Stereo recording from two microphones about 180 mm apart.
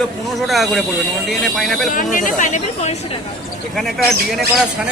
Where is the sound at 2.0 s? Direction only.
45° left (ahead or behind).